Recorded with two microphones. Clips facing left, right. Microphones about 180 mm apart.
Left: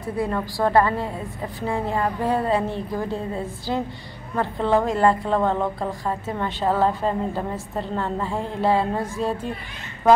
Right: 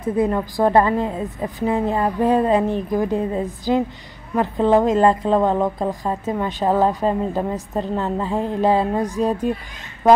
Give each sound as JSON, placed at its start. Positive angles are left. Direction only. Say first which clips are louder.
{"t": 0.0, "sound": "a woman's voice", "louder": "right 6 dB", "side_deg": -20}